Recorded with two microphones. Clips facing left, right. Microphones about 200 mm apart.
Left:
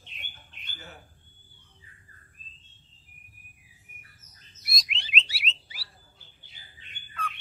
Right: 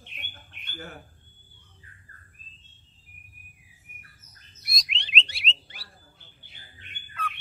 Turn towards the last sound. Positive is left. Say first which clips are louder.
# right 1 dB
turn(degrees=0)  # may be behind; listen again after turning